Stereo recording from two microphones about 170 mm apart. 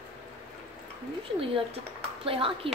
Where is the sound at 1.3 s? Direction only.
35° right (ahead or behind).